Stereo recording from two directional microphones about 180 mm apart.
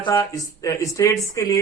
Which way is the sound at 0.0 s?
15° left (ahead or behind).